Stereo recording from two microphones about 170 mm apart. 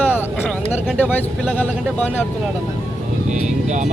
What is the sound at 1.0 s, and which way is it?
Speech, 10° left (ahead or behind).